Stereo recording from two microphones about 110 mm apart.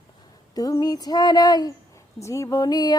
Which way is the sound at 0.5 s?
35° left (ahead or behind).